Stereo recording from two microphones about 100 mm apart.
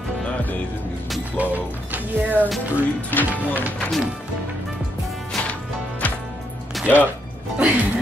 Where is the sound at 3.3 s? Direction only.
15° right (ahead or behind).